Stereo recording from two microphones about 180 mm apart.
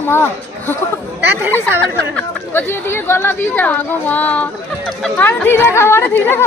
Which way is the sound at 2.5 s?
10° left (ahead or behind).